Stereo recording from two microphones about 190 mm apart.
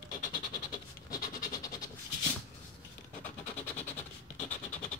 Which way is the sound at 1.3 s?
20° left (ahead or behind).